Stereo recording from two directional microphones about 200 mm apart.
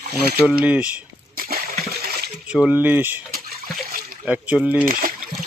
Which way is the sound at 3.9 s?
50° right (ahead or behind).